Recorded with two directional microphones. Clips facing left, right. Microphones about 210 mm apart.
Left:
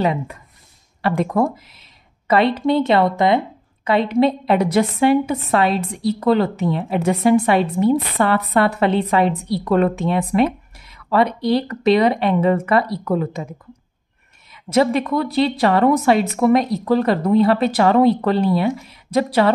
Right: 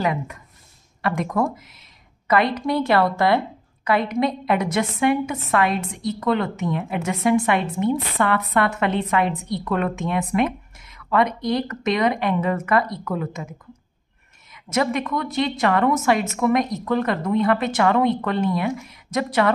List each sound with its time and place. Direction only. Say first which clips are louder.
0.0 s a woman's voice: left 4 dB; 30° left (ahead or behind)